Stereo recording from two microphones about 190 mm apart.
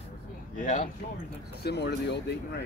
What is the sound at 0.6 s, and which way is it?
Speech, 40° left (ahead or behind).